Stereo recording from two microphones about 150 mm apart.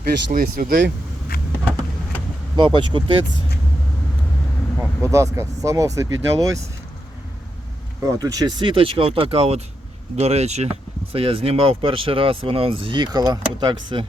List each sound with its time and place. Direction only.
0.3 s speech: 65° right (ahead or behind)
1.3 s vehicle: 90° left
2.6 s speech: 35° right (ahead or behind)
4.8 s speech: 20° right (ahead or behind)
8.0 s speech: 25° right (ahead or behind)